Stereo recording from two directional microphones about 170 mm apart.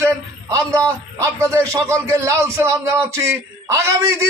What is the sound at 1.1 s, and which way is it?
A man's voice, 15° right (ahead or behind).